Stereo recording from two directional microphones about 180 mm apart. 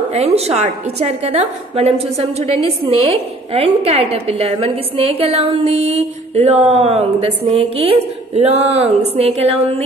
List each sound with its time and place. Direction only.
0.1 s a woman's voice: 35° right (ahead or behind)